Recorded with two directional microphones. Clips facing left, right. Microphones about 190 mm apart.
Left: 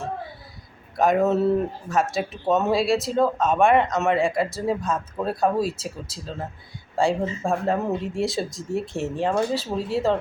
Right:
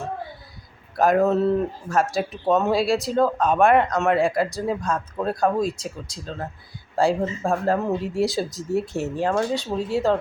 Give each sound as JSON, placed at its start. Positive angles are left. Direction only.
{"t": 0.9, "sound": "speech", "side_deg": 0}